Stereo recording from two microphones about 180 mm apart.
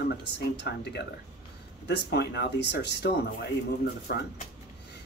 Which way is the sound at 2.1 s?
65° left (ahead or behind).